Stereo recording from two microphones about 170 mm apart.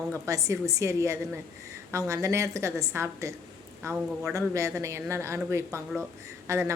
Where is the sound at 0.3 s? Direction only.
20° right (ahead or behind).